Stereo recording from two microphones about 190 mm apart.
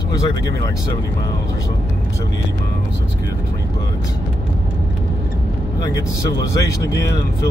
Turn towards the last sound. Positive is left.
turn(degrees=15)  # may be behind; listen again after turning